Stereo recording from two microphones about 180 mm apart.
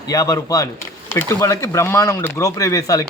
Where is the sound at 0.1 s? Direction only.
20° left (ahead or behind).